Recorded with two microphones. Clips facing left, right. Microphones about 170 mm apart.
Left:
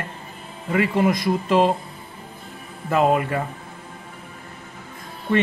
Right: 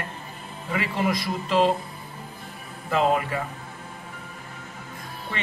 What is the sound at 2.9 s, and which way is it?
Speech, 50° left (ahead or behind).